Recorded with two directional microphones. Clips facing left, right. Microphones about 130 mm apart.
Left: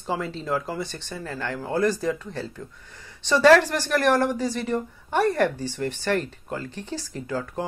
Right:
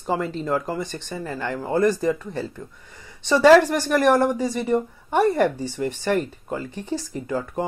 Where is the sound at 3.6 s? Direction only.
Centre (ahead or behind).